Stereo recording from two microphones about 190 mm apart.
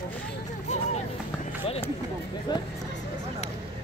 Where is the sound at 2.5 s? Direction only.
25° left (ahead or behind).